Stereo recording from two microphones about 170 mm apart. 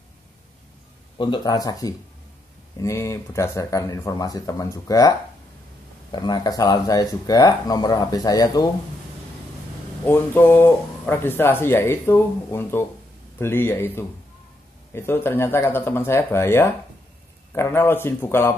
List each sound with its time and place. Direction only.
1.1 s speech: 30° left (ahead or behind)
6.1 s speech: 25° left (ahead or behind)
10.0 s speech: 10° left (ahead or behind)